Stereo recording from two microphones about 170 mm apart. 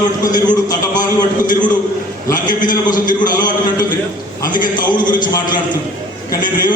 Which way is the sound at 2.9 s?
25° left (ahead or behind).